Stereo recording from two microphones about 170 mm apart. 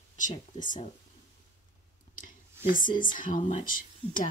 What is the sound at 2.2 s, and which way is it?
Speech, 55° left (ahead or behind).